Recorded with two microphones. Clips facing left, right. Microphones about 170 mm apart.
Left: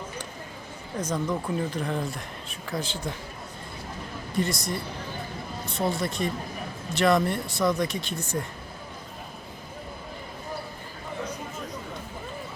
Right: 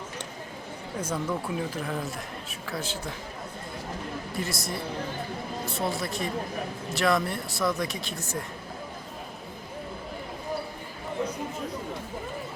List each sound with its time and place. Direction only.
0.9 s speech: 10° right (ahead or behind)
4.4 s speech: centre (ahead or behind)